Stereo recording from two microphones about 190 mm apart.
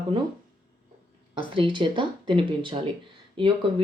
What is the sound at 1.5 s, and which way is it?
Speech, 25° right (ahead or behind).